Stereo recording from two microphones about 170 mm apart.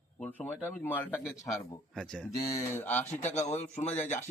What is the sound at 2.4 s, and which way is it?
Speech, 20° left (ahead or behind).